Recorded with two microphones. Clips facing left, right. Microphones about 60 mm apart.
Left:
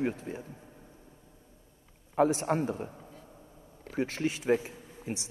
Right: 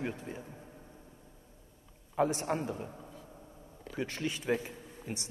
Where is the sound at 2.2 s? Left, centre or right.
Left.